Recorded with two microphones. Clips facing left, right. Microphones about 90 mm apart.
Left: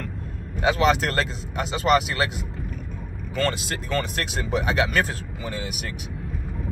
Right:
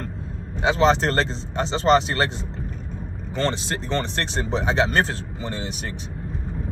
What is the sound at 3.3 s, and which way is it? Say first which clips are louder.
Speech: right 1 dB; 30° right (ahead or behind).